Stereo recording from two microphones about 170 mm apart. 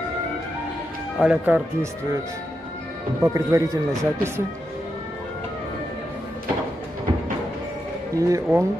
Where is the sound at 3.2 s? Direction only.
20° right (ahead or behind).